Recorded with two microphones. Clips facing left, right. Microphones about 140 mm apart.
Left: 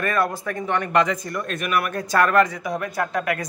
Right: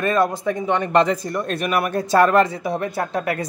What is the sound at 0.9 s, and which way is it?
Speech, 30° right (ahead or behind).